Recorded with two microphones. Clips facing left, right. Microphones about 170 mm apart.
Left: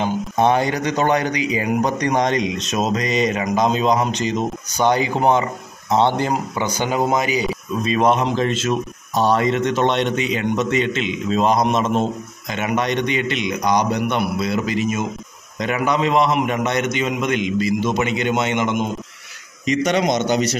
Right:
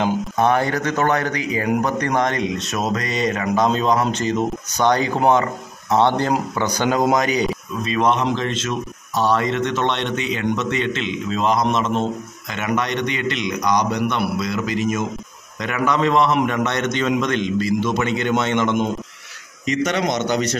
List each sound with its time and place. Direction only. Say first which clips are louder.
0.4 s a man's voice: left 2 dB; 20° left (ahead or behind)
13.5 s speech: even; 30° left (ahead or behind)
13.7 s a man's voice: left 1 dB; 10° left (ahead or behind)
14.4 s a man's voice: left 1 dB; 30° left (ahead or behind)